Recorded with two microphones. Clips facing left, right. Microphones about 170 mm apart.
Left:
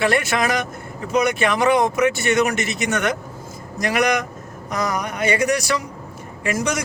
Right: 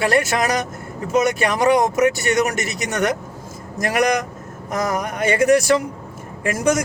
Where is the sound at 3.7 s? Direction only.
45° right (ahead or behind).